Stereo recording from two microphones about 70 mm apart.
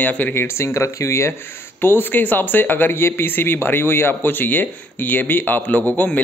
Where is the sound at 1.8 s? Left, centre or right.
Left.